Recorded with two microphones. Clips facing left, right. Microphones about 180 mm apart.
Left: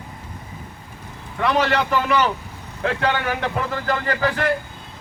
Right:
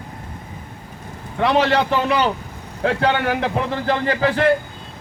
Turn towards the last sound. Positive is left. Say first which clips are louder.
# right 4 dB
turn(degrees=-30)  # may be behind; listen again after turning